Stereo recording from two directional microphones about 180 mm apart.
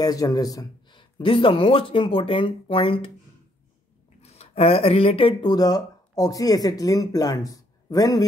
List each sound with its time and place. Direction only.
0.0 s speech: 20° left (ahead or behind)
4.2 s speech: 35° left (ahead or behind); by 8.3 s 20° left (ahead or behind)